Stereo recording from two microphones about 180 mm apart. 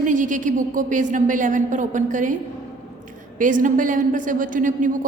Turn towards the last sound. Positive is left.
turn(degrees=-45)  # may be behind; listen again after turning